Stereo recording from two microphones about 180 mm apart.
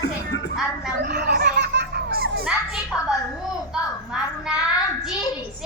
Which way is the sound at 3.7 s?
5° right (ahead or behind).